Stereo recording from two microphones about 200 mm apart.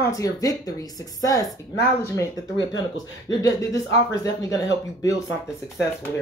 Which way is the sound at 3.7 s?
60° left (ahead or behind).